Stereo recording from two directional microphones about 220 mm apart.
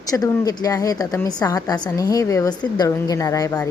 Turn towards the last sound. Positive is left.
turn(degrees=15)  # may be behind; listen again after turning